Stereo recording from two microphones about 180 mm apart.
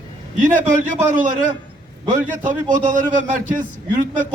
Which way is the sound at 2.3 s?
45° right (ahead or behind).